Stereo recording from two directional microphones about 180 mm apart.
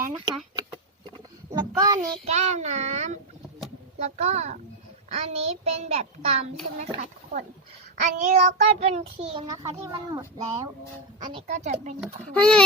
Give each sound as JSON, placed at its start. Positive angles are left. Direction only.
{"t": 0.1, "sound": "speech", "side_deg": -25}
{"t": 1.5, "sound": "child singing", "side_deg": -20}
{"t": 2.0, "sound": "a child's voice", "side_deg": -35}
{"t": 7.9, "sound": "child singing", "side_deg": -45}
{"t": 9.5, "sound": "a child's voice", "side_deg": -25}
{"t": 11.4, "sound": "a child's voice", "side_deg": -40}
{"t": 12.3, "sound": "a child's voice", "side_deg": 5}